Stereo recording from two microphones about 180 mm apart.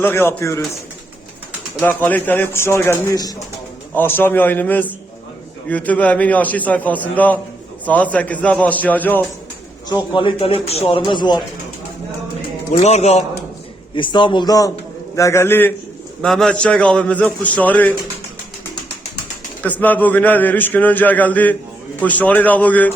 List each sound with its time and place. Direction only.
0.0 s a man's voice: 10° left (ahead or behind)
1.8 s a man's voice: 10° left (ahead or behind)
9.9 s speech: 25° left (ahead or behind)
12.7 s a man's voice: 40° left (ahead or behind)
13.9 s a man's voice: 25° left (ahead or behind); by 17.9 s 10° left (ahead or behind)
19.6 s a man's voice: 10° left (ahead or behind)